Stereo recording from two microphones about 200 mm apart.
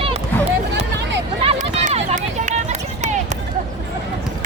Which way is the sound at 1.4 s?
35° right (ahead or behind).